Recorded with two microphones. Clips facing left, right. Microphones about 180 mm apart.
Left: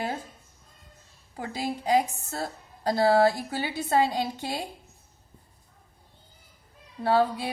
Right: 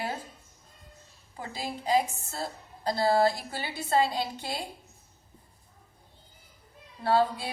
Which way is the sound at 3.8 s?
45° left (ahead or behind).